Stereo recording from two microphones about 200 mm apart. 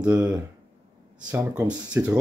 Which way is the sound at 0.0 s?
10° right (ahead or behind).